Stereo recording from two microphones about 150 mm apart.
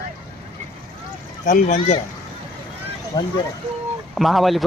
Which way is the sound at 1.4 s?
55° left (ahead or behind).